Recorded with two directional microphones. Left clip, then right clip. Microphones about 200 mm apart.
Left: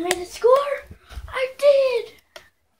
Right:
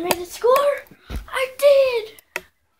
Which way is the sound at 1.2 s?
20° right (ahead or behind).